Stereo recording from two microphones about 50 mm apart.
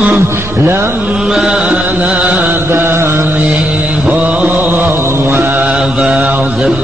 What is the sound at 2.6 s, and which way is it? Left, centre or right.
Mantra, right.